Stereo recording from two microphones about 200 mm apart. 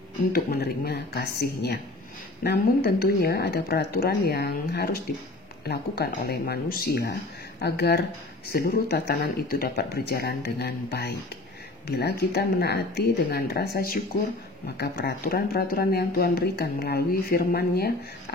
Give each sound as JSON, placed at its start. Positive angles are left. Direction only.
{"t": 0.3, "sound": "speech", "side_deg": 50}